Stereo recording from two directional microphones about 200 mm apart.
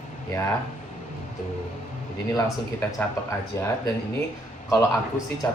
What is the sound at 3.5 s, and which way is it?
Speech, 15° left (ahead or behind).